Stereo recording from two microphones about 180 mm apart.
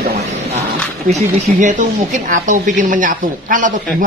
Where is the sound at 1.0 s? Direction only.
40° right (ahead or behind).